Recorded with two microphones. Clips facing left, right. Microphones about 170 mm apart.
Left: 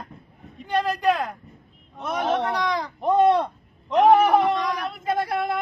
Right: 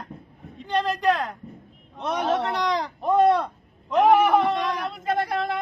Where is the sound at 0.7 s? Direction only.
15° left (ahead or behind).